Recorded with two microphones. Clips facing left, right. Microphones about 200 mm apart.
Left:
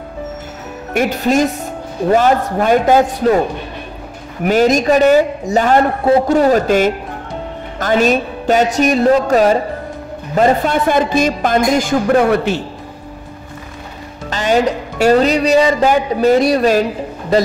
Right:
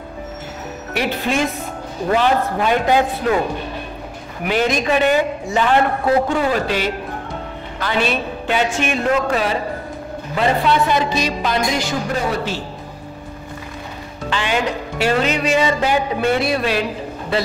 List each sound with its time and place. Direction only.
0.9 s a man's voice: 45° left (ahead or behind)
4.5 s a man's voice: 40° left (ahead or behind); by 12.5 s 60° left (ahead or behind)
14.3 s speech: 40° left (ahead or behind)